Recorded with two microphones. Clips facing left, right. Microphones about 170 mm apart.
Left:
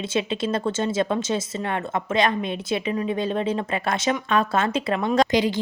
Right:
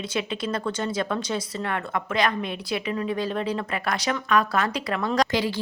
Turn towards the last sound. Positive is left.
turn(degrees=20)  # may be behind; listen again after turning